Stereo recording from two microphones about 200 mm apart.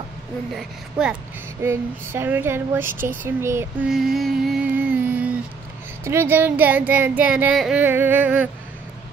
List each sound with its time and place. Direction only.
0.6 s speech: 5° right (ahead or behind)
3.9 s music: centre (ahead or behind)
6.0 s speech: 10° right (ahead or behind)